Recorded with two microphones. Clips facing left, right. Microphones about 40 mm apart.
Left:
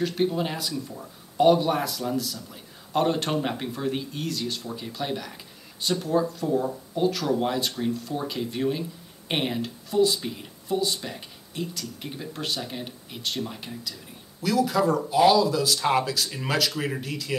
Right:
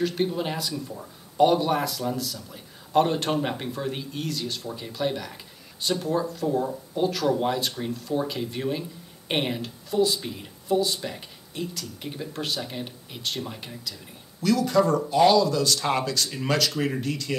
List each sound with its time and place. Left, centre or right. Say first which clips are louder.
0.0 s speech: left 1 dB; centre